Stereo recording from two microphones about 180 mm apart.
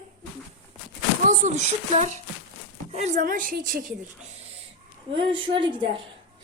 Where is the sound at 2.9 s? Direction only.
40° right (ahead or behind).